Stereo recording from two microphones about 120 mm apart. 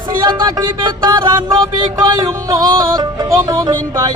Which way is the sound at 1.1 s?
35° right (ahead or behind).